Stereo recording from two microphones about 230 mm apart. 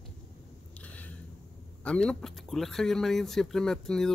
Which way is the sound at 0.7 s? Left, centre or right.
Centre.